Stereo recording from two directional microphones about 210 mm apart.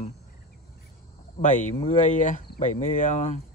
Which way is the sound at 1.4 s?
35° left (ahead or behind).